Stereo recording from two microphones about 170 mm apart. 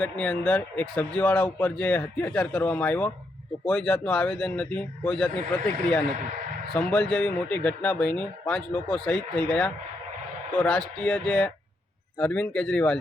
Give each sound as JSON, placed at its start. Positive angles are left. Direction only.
{"t": 0.0, "sound": "speech", "side_deg": 5}